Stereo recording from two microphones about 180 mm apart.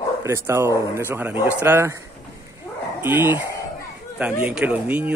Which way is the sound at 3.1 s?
10° right (ahead or behind).